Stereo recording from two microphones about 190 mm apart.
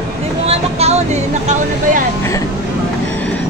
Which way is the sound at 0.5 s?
35° right (ahead or behind).